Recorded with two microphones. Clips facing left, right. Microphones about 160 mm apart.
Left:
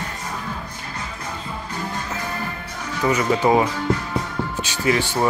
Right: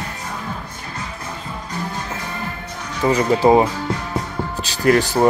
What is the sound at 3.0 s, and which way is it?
Speech, 30° right (ahead or behind).